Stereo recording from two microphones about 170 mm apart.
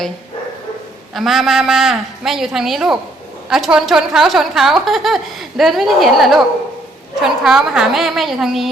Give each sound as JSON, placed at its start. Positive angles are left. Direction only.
{"t": 1.1, "sound": "a woman's voice", "side_deg": 0}